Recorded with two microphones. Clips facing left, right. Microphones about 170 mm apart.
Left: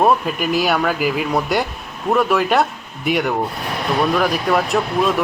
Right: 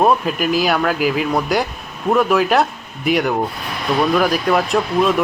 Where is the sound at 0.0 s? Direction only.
Centre (ahead or behind).